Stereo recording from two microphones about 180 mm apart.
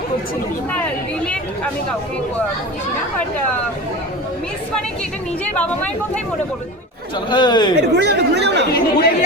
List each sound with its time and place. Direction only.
7.3 s speech: 25° left (ahead or behind)
7.8 s speech: 70° right (ahead or behind)
8.7 s speech: 60° left (ahead or behind)